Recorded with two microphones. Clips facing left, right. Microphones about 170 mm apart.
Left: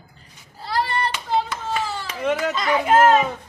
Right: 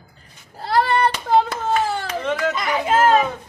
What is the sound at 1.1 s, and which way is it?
Hands, 55° right (ahead or behind).